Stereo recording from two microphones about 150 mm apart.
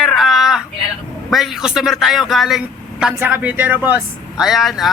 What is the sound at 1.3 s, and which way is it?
A man's voice, centre (ahead or behind).